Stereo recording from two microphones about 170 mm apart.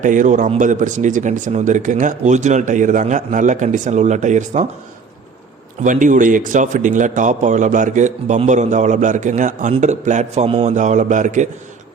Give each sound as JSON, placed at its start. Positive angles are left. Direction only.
{"t": 0.0, "sound": "speech", "side_deg": -50}
{"t": 5.8, "sound": "speech", "side_deg": -50}